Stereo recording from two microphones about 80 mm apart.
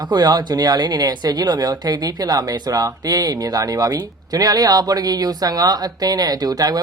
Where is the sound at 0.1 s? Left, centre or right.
Right.